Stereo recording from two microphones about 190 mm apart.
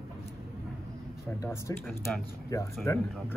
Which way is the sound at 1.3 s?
15° left (ahead or behind).